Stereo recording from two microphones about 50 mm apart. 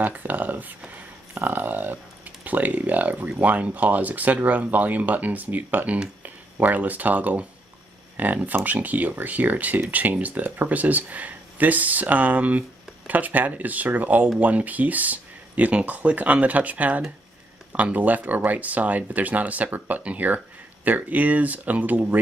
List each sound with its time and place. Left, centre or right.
0.0 s speech: right
1.3 s speech: right